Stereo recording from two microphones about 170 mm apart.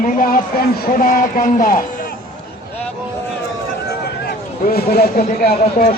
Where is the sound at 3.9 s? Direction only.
65° left (ahead or behind).